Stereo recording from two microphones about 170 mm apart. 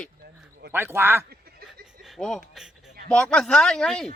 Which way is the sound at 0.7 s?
15° right (ahead or behind).